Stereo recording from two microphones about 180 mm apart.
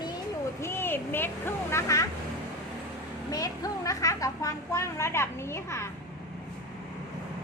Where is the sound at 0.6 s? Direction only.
15° left (ahead or behind).